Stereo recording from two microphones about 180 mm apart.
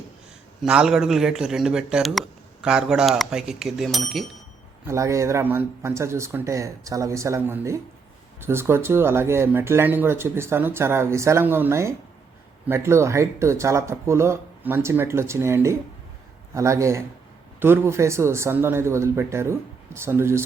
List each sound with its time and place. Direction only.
0.6 s a man's voice: 5° right (ahead or behind)
4.9 s speech: 15° right (ahead or behind)